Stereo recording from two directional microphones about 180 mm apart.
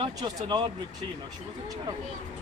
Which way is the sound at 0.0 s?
20° right (ahead or behind).